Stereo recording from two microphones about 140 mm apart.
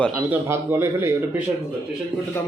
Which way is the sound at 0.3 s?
15° right (ahead or behind).